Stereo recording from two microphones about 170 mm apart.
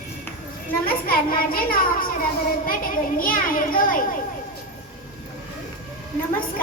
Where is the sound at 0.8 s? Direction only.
60° left (ahead or behind).